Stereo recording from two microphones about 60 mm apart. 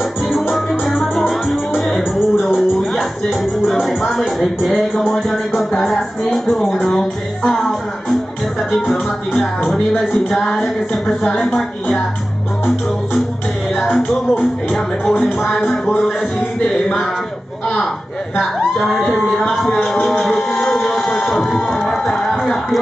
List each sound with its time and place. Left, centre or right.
0.5 s music: centre
3.6 s speech: centre
5.7 s music: centre
9.7 s music: centre
15.4 s speech: centre
18.3 s speech: centre
19.5 s music: centre